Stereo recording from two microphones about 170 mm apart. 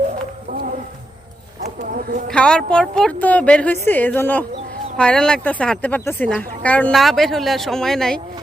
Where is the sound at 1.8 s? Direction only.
60° right (ahead or behind).